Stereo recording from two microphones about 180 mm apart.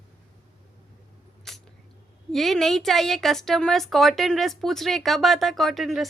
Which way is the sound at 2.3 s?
Centre (ahead or behind).